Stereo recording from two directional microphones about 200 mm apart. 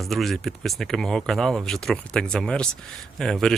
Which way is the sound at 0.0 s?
Centre (ahead or behind).